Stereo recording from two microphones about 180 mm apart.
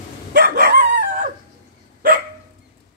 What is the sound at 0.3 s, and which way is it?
Dog, 60° right (ahead or behind).